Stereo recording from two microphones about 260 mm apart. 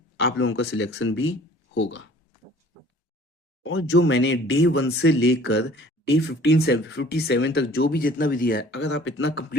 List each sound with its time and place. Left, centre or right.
0.2 s speech: left
3.6 s speech: left